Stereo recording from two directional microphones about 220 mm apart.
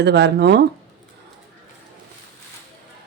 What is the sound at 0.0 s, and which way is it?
Speech, 50° right (ahead or behind).